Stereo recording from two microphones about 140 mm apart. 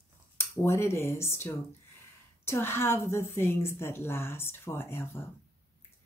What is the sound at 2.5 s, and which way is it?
A woman's voice, 15° left (ahead or behind).